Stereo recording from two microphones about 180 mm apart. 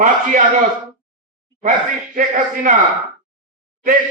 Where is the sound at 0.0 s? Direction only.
50° right (ahead or behind).